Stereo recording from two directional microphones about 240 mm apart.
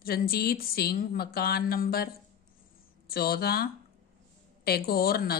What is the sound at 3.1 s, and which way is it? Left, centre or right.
Speech, left.